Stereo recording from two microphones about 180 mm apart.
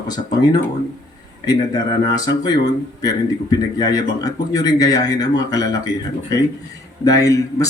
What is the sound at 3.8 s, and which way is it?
A man's voice, 20° left (ahead or behind).